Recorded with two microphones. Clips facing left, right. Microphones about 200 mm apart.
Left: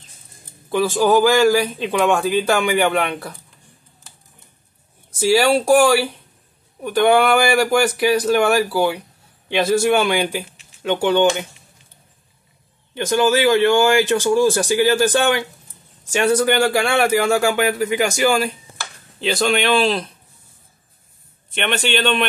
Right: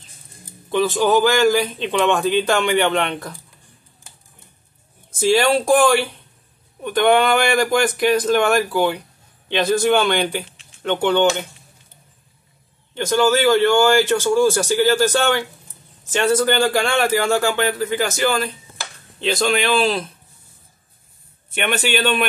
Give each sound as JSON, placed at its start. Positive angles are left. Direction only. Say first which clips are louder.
{"t": 0.7, "sound": "a man's voice", "louder": "left 1 dB", "side_deg": 10}
{"t": 5.2, "sound": "a man's voice", "louder": "left 1 dB", "side_deg": 5}
{"t": 12.9, "sound": "a man's voice", "louder": "even", "side_deg": 15}
{"t": 21.5, "sound": "a man's voice", "louder": "even", "side_deg": -10}